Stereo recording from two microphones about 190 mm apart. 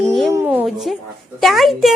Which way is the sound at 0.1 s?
Centre (ahead or behind).